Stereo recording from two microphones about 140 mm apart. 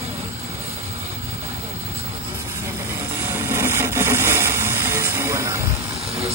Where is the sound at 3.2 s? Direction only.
20° right (ahead or behind).